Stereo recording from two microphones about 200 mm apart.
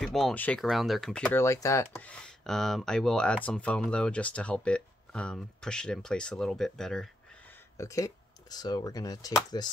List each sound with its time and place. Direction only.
0.0 s speech: centre (ahead or behind)
7.7 s speech: 15° left (ahead or behind)